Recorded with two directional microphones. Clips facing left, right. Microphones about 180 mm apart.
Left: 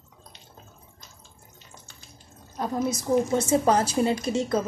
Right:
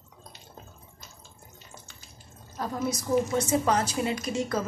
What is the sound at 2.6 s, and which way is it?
A woman's voice, 25° left (ahead or behind).